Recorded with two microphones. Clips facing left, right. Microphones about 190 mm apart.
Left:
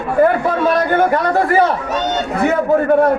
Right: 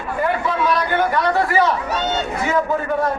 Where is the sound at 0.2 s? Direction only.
50° left (ahead or behind).